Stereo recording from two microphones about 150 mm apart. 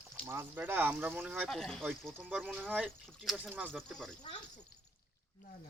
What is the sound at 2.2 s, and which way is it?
Speech, 10° right (ahead or behind).